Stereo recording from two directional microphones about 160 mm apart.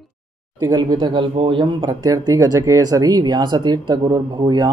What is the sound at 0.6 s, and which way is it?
Speech, 25° right (ahead or behind).